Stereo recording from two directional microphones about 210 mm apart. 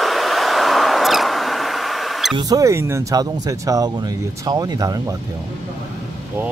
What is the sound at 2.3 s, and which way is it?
Speech, 15° right (ahead or behind).